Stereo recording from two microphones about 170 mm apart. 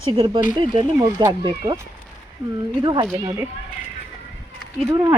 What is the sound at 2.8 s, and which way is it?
Speech, 25° right (ahead or behind).